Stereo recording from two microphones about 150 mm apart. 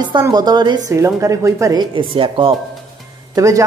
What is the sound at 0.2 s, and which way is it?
Speech, 25° right (ahead or behind).